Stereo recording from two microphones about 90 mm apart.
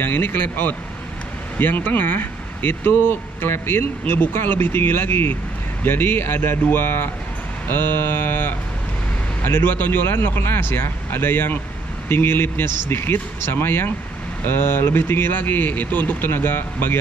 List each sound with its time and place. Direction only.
0.0 s speech: 25° left (ahead or behind)